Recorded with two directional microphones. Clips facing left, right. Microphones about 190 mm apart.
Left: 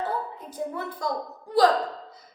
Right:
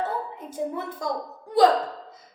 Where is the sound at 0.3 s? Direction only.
25° right (ahead or behind).